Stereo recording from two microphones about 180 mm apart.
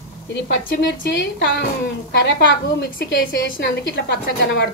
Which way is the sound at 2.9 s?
60° left (ahead or behind).